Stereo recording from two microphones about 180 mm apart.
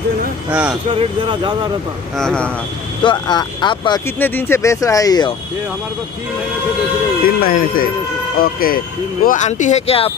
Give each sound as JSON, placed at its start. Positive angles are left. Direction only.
{"t": 0.5, "sound": "speech", "side_deg": -5}
{"t": 0.8, "sound": "speech", "side_deg": -30}
{"t": 2.1, "sound": "speech", "side_deg": 5}
{"t": 3.0, "sound": "speech", "side_deg": 25}
{"t": 4.2, "sound": "speech", "side_deg": 10}
{"t": 7.2, "sound": "speech", "side_deg": 55}